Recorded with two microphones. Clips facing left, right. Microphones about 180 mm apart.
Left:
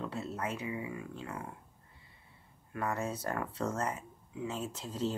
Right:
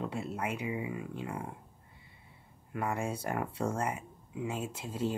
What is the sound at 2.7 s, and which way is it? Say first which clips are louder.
Speech: right 1 dB; 10° right (ahead or behind).